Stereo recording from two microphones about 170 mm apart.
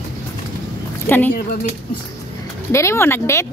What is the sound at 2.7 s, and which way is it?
Speech, 15° left (ahead or behind).